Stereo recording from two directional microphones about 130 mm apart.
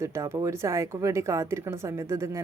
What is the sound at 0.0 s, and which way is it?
Speech, 20° right (ahead or behind).